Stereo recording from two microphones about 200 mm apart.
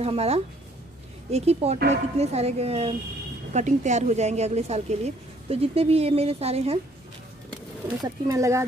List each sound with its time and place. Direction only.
0.0 s a woman's voice: 30° right (ahead or behind)
8.0 s speech: 15° right (ahead or behind)